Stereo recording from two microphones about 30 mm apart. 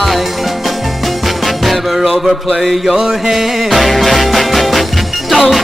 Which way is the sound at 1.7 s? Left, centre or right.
Centre.